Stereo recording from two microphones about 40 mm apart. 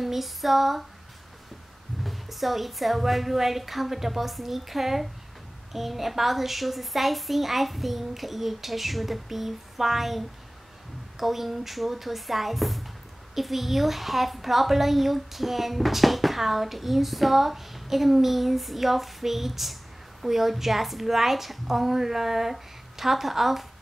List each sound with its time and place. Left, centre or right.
0.0 s a woman's voice: centre
2.0 s a woman's voice: centre